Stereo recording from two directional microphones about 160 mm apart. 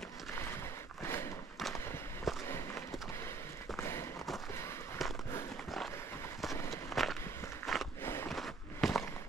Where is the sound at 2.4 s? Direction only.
15° left (ahead or behind).